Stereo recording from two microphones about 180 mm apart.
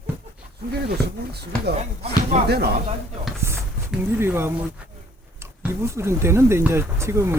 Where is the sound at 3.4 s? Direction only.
15° right (ahead or behind).